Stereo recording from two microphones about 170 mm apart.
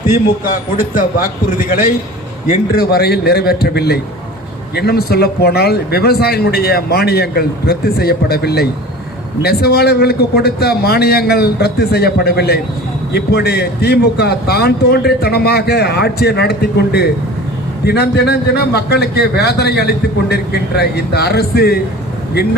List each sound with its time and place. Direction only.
2.5 s speech: 65° left (ahead or behind)